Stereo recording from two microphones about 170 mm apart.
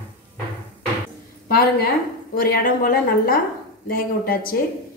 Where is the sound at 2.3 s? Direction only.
60° left (ahead or behind).